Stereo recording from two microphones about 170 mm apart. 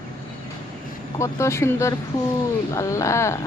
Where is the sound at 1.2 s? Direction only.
15° left (ahead or behind).